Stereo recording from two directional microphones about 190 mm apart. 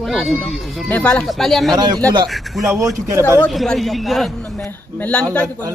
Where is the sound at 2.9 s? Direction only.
15° right (ahead or behind).